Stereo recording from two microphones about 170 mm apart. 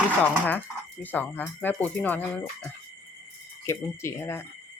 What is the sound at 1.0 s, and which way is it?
Speech, 10° left (ahead or behind).